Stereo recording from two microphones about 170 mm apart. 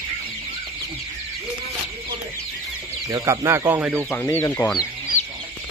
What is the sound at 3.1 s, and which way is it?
Speech, 15° right (ahead or behind).